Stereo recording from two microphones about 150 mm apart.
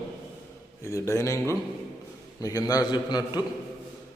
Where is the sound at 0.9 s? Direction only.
20° left (ahead or behind).